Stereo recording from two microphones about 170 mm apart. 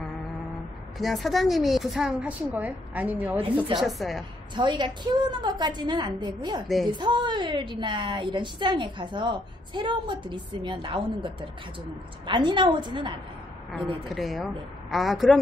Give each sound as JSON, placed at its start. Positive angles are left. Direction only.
{"t": 0.9, "sound": "a woman's voice", "side_deg": 0}
{"t": 4.6, "sound": "a woman's voice", "side_deg": -25}
{"t": 14.0, "sound": "a woman's voice", "side_deg": 0}